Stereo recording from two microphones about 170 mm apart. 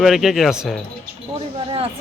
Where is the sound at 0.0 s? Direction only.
Centre (ahead or behind).